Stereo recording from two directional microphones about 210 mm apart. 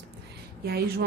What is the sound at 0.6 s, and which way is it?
Speech, 50° right (ahead or behind).